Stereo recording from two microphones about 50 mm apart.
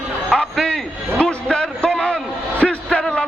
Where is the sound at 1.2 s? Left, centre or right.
Centre.